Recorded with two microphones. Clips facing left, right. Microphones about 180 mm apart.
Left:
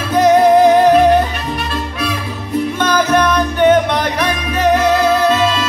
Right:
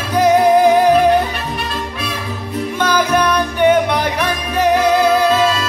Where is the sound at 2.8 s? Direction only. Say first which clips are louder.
Even; 10° right (ahead or behind).